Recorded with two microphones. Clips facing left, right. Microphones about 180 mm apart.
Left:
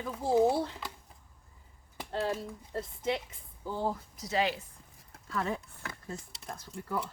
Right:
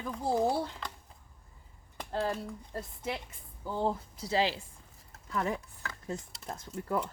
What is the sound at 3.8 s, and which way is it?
Speech, 30° right (ahead or behind).